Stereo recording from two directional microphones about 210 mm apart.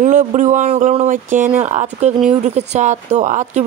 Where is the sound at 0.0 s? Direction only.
35° right (ahead or behind).